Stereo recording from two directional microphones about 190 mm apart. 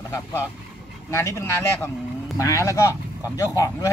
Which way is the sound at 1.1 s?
15° left (ahead or behind).